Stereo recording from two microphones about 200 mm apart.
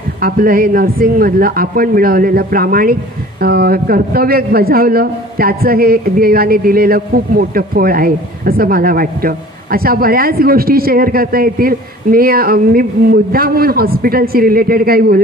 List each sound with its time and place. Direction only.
0.2 s speech: 45° right (ahead or behind)